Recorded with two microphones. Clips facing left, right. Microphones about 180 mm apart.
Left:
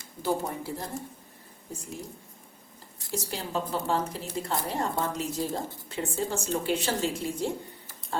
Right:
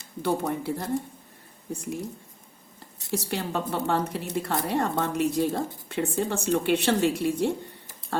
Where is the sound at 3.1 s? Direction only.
65° right (ahead or behind).